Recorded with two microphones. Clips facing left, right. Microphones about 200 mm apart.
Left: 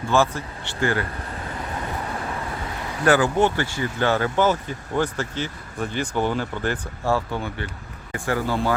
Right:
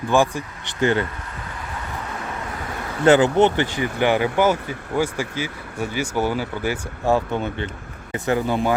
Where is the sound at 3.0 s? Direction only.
20° right (ahead or behind).